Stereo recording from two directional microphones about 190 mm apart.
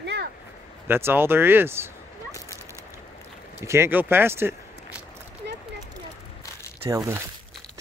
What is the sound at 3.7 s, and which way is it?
Speech, 10° right (ahead or behind).